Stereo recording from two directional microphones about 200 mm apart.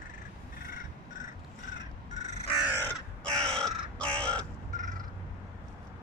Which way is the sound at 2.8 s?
5° left (ahead or behind).